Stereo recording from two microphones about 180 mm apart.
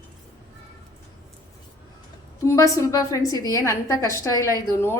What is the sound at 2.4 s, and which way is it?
A woman's voice, 15° left (ahead or behind).